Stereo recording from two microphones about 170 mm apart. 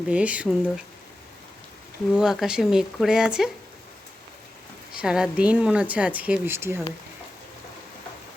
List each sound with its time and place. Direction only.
0.1 s speech: 10° right (ahead or behind)
2.1 s speech: 5° right (ahead or behind)
5.0 s speech: 5° right (ahead or behind)